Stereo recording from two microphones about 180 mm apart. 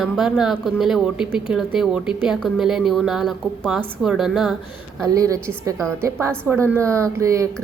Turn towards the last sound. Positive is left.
turn(degrees=-15)  # may be behind; listen again after turning